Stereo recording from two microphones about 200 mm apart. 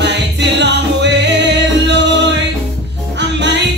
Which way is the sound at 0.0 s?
60° right (ahead or behind).